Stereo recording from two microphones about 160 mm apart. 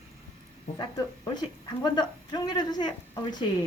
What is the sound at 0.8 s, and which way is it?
A woman's voice, 25° left (ahead or behind).